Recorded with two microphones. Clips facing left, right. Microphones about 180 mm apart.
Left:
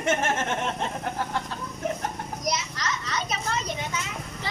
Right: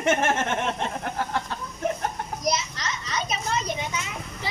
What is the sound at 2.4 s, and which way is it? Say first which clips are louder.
Children playing: right 2 dB; 25° right (ahead or behind).